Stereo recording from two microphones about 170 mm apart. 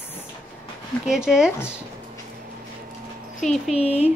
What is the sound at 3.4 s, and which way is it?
Speech, centre (ahead or behind).